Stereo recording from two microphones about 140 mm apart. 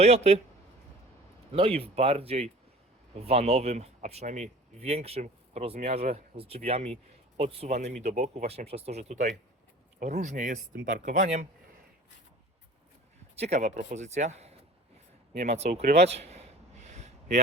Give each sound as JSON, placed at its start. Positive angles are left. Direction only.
{"t": 0.0, "sound": "speech", "side_deg": -50}
{"t": 1.5, "sound": "speech", "side_deg": -45}
{"t": 13.3, "sound": "speech", "side_deg": -50}
{"t": 15.3, "sound": "speech", "side_deg": -85}
{"t": 15.5, "sound": "a man's voice", "side_deg": -50}
{"t": 16.8, "sound": "a sound", "side_deg": -65}